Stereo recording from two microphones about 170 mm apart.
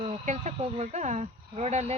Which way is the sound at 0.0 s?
45° right (ahead or behind).